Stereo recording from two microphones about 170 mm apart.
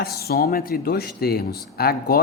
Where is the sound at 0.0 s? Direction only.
65° left (ahead or behind).